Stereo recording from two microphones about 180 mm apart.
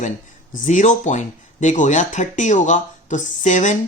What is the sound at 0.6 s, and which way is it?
Speech, 45° left (ahead or behind).